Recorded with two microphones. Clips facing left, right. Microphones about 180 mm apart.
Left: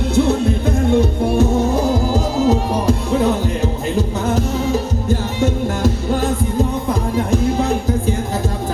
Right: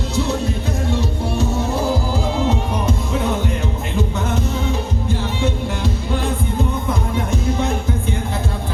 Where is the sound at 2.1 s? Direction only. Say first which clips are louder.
Left 4 dB; 40° left (ahead or behind).